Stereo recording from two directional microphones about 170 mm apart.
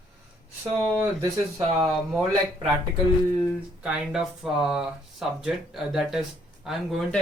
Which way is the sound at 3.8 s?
5° right (ahead or behind).